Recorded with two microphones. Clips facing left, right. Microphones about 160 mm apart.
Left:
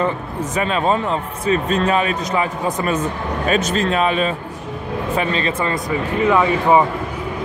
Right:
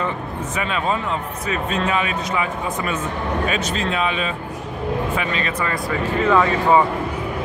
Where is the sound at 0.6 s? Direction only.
35° left (ahead or behind).